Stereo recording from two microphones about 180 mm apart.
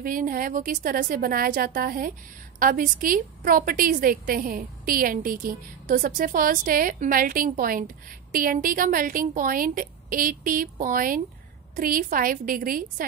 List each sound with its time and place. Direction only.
0.0 s a woman's voice: 50° right (ahead or behind)